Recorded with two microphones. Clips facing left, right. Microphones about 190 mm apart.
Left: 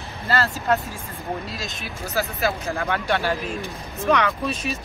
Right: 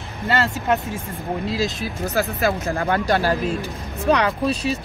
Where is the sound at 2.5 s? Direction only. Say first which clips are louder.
Right 4 dB; 55° right (ahead or behind).